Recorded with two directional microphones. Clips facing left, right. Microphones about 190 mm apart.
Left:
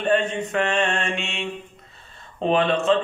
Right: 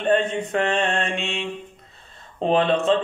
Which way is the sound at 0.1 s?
35° right (ahead or behind).